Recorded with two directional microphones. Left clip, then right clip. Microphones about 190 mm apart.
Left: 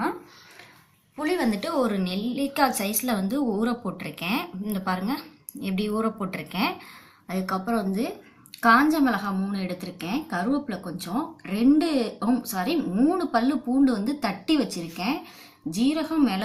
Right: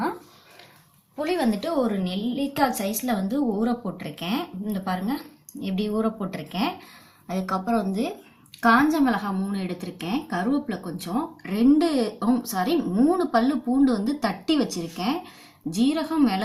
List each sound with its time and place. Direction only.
1.2 s a woman's voice: 30° right (ahead or behind)